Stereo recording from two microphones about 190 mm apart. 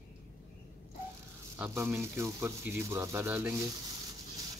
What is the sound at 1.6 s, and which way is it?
Speech, 10° right (ahead or behind).